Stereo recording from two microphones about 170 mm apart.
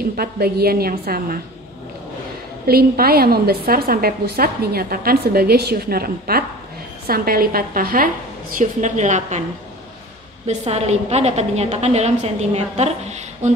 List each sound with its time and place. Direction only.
0.1 s a woman's voice: 65° right (ahead or behind)
2.6 s a woman's voice: 65° right (ahead or behind)
8.5 s a woman's voice: 45° right (ahead or behind)
10.4 s a woman's voice: 40° right (ahead or behind)